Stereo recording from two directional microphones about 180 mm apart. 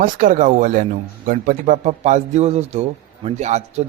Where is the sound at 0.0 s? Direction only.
50° right (ahead or behind).